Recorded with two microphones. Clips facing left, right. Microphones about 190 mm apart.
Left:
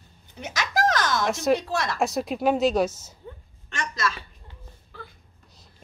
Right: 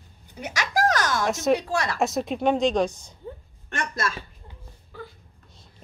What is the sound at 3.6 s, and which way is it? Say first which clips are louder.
Speech: even; 55° right (ahead or behind).